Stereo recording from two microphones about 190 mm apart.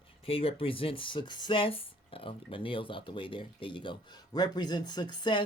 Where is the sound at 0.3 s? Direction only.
30° left (ahead or behind).